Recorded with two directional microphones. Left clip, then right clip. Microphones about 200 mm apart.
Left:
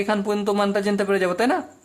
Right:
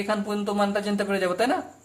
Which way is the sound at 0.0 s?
35° left (ahead or behind).